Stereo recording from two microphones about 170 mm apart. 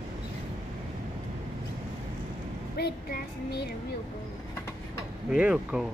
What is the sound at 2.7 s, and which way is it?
Music, 65° left (ahead or behind).